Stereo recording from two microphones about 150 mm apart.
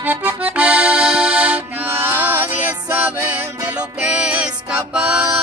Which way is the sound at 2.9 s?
10° right (ahead or behind).